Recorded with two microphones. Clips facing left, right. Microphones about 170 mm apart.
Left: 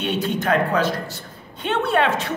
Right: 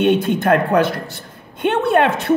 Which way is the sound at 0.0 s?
55° right (ahead or behind).